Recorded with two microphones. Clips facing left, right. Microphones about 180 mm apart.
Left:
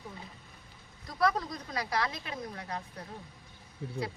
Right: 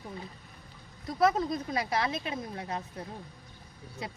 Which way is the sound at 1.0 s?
25° right (ahead or behind).